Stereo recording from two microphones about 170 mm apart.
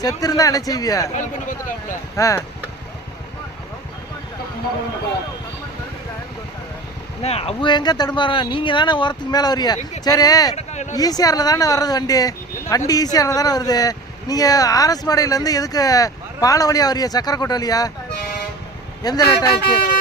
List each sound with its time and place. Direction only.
0.2 s speech: 20° left (ahead or behind)
1.1 s speech: 50° left (ahead or behind)
2.1 s speech: 20° left (ahead or behind)
7.2 s speech: 35° left (ahead or behind)
10.5 s a sound: 40° left (ahead or behind)
10.9 s speech: 20° left (ahead or behind)
19.0 s speech: 20° left (ahead or behind)